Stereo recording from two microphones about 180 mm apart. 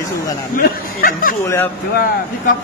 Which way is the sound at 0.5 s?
50° left (ahead or behind).